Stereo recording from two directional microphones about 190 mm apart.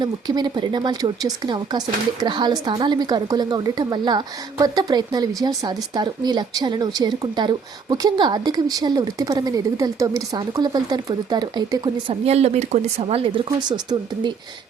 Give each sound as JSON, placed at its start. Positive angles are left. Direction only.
{"t": 0.0, "sound": "a woman's voice", "side_deg": -20}